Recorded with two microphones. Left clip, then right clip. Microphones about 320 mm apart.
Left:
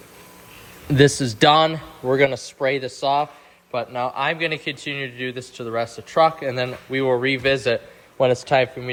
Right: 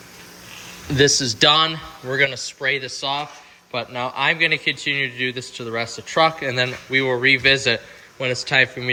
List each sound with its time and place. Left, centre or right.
0.9 s a man's voice: left; by 8.9 s centre